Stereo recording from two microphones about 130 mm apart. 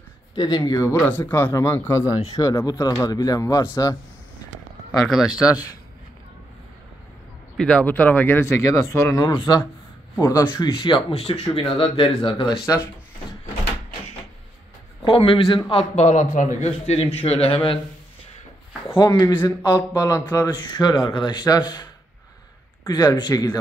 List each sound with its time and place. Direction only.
0.3 s speech: 35° left (ahead or behind)
0.9 s speech: 15° left (ahead or behind); by 3.6 s 30° left (ahead or behind)
5.0 s speech: centre (ahead or behind)
7.5 s speech: 10° left (ahead or behind); by 10.4 s 25° left (ahead or behind)
10.5 s speech: 40° left (ahead or behind)
11.1 s a man's voice: 45° left (ahead or behind)
12.2 s speech: 35° left (ahead or behind)
15.0 s a man's voice: 45° left (ahead or behind)
15.7 s a man's voice: 60° left (ahead or behind)
18.9 s speech: 30° left (ahead or behind)
22.8 s speech: 30° left (ahead or behind)